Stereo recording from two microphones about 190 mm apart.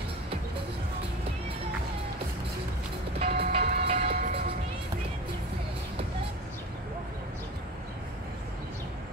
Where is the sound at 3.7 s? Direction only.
30° right (ahead or behind).